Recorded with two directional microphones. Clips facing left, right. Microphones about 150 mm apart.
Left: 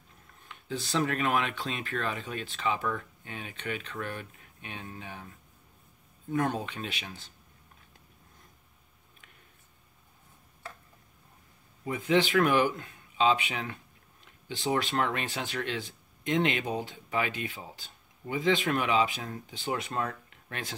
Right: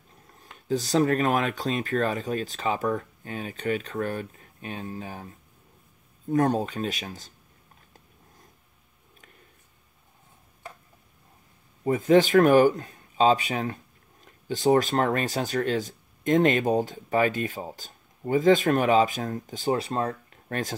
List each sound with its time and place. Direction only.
0.4 s speech: 40° right (ahead or behind)
6.3 s speech: 40° right (ahead or behind)
11.8 s speech: 45° right (ahead or behind)